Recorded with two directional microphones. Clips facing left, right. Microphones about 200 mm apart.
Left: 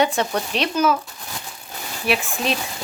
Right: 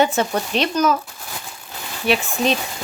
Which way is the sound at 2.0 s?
Centre (ahead or behind).